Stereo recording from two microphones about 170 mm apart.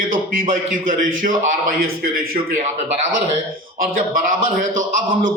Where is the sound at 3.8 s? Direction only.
55° right (ahead or behind).